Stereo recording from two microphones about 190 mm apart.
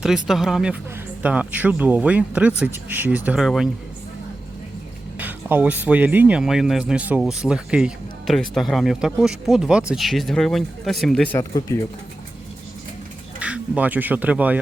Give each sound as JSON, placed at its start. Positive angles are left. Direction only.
{"t": 0.3, "sound": "speech", "side_deg": 0}
{"t": 5.1, "sound": "speech", "side_deg": -10}
{"t": 11.3, "sound": "speech", "side_deg": 15}
{"t": 13.4, "sound": "speech", "side_deg": -5}